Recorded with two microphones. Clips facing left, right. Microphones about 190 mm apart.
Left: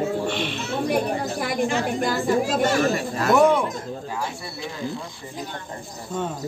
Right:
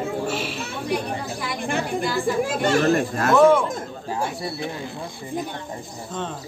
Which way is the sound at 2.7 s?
50° right (ahead or behind).